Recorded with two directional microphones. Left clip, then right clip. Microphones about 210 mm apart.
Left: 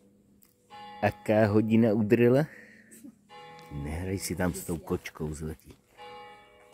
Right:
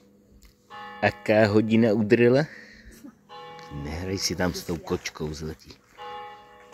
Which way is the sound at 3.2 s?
30° left (ahead or behind).